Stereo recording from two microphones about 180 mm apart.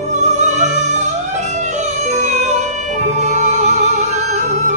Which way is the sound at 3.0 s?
40° right (ahead or behind).